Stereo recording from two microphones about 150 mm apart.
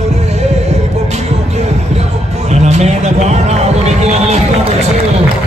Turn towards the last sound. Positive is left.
turn(degrees=-45)  # may be behind; listen again after turning